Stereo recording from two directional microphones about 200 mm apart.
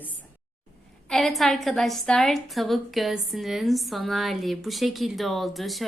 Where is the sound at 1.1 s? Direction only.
Centre (ahead or behind).